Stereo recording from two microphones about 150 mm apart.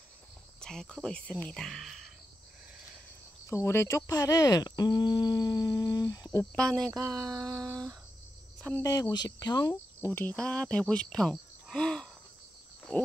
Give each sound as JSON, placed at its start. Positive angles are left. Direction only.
{"t": 0.6, "sound": "speech", "side_deg": 5}
{"t": 3.4, "sound": "speech", "side_deg": 20}
{"t": 6.5, "sound": "speech", "side_deg": 5}
{"t": 7.1, "sound": "a sound", "side_deg": -25}
{"t": 8.5, "sound": "speech", "side_deg": 10}
{"t": 8.8, "sound": "cricket", "side_deg": 25}
{"t": 10.1, "sound": "speech", "side_deg": 10}